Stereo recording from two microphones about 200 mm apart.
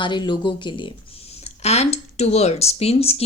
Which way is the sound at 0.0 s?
25° left (ahead or behind).